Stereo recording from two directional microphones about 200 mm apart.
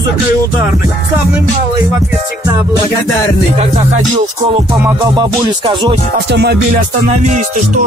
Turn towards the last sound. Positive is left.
turn(degrees=-55)  # may be behind; listen again after turning